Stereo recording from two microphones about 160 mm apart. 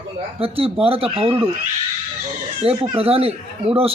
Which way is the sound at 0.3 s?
35° right (ahead or behind).